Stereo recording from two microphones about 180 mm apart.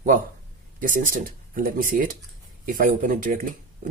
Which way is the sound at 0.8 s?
50° right (ahead or behind).